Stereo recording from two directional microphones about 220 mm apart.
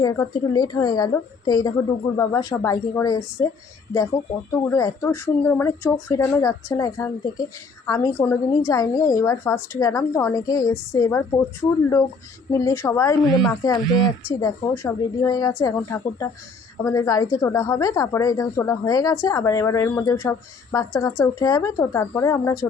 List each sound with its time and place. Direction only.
0.0 s speech: 15° left (ahead or behind)
4.7 s speech: 15° left (ahead or behind)
12.5 s speech: 15° left (ahead or behind)
13.3 s speech: centre (ahead or behind)
13.6 s speech: 15° left (ahead or behind)